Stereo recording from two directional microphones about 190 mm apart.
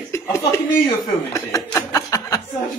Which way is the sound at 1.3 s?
15° left (ahead or behind).